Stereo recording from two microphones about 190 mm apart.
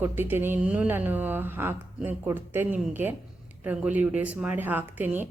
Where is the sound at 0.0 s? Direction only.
10° right (ahead or behind).